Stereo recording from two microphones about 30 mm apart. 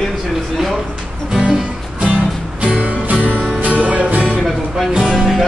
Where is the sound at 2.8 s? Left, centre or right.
Right.